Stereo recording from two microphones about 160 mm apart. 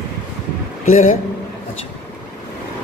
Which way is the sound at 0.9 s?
50° left (ahead or behind).